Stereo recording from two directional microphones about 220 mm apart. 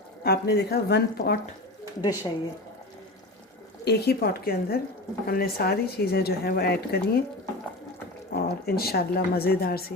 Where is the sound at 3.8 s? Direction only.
50° left (ahead or behind).